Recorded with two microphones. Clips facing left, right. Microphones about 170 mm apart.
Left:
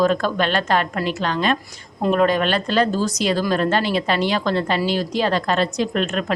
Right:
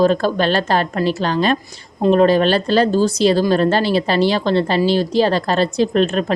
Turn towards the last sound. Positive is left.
turn(degrees=-35)  # may be behind; listen again after turning